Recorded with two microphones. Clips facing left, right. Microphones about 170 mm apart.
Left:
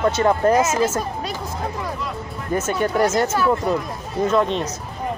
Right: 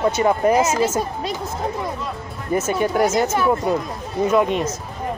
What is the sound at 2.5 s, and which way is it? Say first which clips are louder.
Speech: right 1 dB; 10° right (ahead or behind).